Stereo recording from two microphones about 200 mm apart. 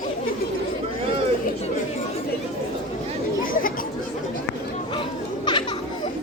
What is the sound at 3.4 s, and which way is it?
Chatter, 45° left (ahead or behind).